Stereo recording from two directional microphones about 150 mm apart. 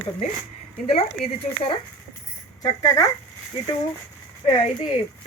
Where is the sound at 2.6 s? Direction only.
25° left (ahead or behind).